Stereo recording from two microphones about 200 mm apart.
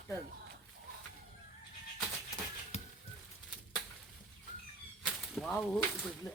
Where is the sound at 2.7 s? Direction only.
35° left (ahead or behind).